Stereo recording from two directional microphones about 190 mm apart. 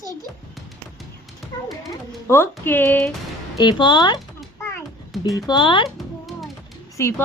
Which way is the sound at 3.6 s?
25° left (ahead or behind).